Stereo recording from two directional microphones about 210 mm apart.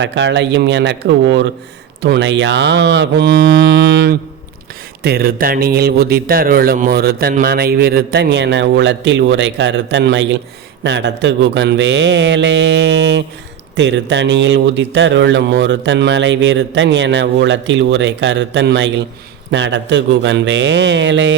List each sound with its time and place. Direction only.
0.0 s speech: 60° right (ahead or behind)